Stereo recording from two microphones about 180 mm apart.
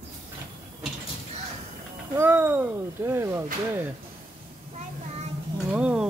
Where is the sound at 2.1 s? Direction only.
10° right (ahead or behind).